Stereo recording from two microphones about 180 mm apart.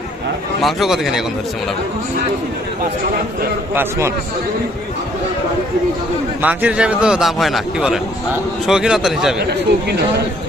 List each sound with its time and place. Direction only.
0.6 s a man's voice: centre (ahead or behind)
3.8 s a man's voice: 15° right (ahead or behind)
6.4 s a man's voice: 10° right (ahead or behind)
9.5 s speech: 65° right (ahead or behind)